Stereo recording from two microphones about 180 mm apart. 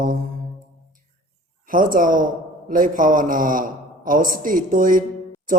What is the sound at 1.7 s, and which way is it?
A man's voice, 50° right (ahead or behind).